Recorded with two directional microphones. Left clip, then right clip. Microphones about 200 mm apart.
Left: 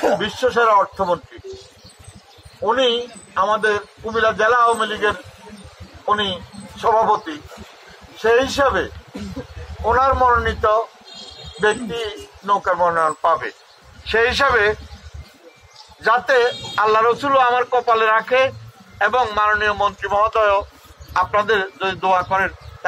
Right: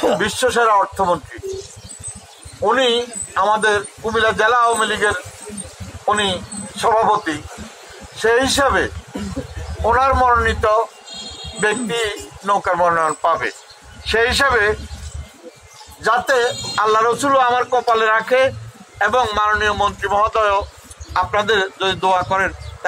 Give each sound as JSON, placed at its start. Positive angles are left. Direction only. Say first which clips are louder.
{"t": 0.2, "sound": "a man's voice", "louder": "right 1 dB", "side_deg": -10}
{"t": 2.6, "sound": "a man's voice", "louder": "right 2 dB", "side_deg": -10}
{"t": 16.0, "sound": "speech", "louder": "even", "side_deg": 5}